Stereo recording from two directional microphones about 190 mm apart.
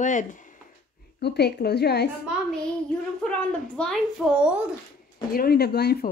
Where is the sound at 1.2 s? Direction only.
60° left (ahead or behind).